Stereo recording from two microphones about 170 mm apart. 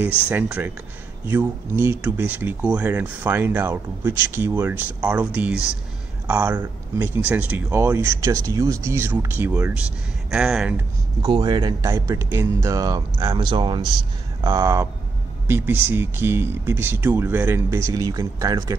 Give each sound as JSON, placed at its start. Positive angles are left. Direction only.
{"t": 0.3, "sound": "speech", "side_deg": -10}
{"t": 10.3, "sound": "speech", "side_deg": 0}
{"t": 11.2, "sound": "speech", "side_deg": -25}